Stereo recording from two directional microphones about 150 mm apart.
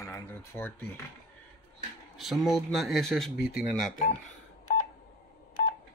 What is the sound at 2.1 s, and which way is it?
Speech, centre (ahead or behind).